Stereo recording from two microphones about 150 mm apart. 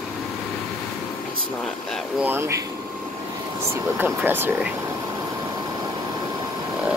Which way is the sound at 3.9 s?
15° right (ahead or behind).